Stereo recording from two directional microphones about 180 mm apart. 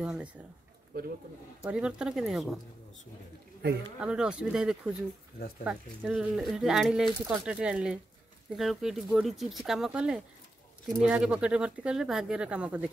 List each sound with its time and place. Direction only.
0.0 s speech: 5° right (ahead or behind)
0.9 s speech: 60° right (ahead or behind)
1.6 s speech: 5° right (ahead or behind)
4.0 s speech: 5° right (ahead or behind)